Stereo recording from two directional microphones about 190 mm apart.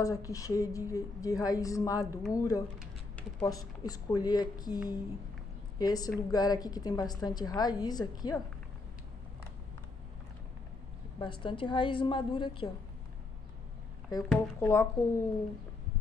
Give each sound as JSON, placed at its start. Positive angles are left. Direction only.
{"t": 0.0, "sound": "a woman's voice", "side_deg": 15}
{"t": 11.1, "sound": "a woman's voice", "side_deg": 25}
{"t": 14.3, "sound": "a woman's voice", "side_deg": 10}